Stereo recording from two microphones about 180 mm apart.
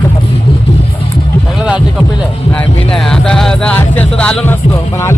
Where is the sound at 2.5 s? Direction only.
5° left (ahead or behind).